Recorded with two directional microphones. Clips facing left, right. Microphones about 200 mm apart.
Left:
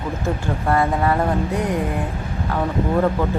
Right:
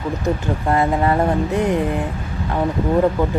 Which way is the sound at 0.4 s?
20° right (ahead or behind).